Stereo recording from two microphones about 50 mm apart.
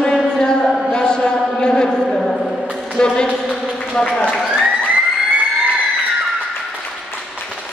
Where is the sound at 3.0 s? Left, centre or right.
Centre.